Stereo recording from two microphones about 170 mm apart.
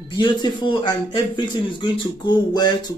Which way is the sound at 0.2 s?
25° left (ahead or behind).